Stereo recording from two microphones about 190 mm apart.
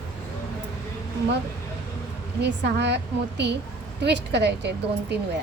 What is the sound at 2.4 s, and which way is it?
A woman's voice, 65° right (ahead or behind).